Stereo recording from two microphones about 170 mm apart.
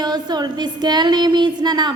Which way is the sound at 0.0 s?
25° right (ahead or behind).